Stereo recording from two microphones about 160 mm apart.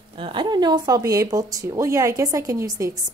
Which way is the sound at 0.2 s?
30° right (ahead or behind).